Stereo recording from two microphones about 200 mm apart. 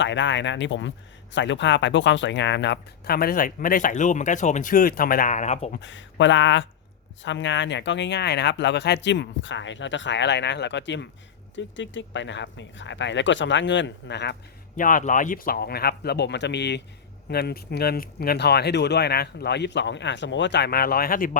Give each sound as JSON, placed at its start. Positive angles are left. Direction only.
{"t": 0.0, "sound": "speech", "side_deg": 65}
{"t": 5.8, "sound": "speech", "side_deg": 65}
{"t": 14.8, "sound": "speech", "side_deg": 45}